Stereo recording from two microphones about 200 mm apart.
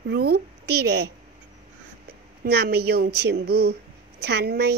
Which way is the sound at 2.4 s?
55° right (ahead or behind).